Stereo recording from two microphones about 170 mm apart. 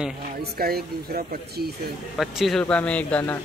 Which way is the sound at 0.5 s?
60° right (ahead or behind).